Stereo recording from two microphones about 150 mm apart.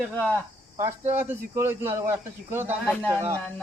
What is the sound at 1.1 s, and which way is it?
Speech, 15° right (ahead or behind).